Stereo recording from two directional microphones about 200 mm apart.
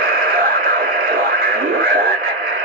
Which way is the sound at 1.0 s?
45° right (ahead or behind).